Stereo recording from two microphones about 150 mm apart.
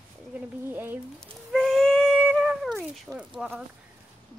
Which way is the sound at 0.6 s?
15° right (ahead or behind).